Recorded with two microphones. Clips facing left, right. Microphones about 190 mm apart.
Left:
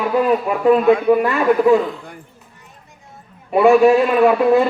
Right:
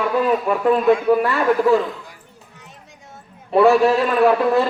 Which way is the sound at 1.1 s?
15° left (ahead or behind).